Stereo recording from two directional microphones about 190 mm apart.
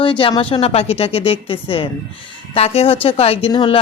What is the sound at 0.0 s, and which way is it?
Speech, 25° left (ahead or behind).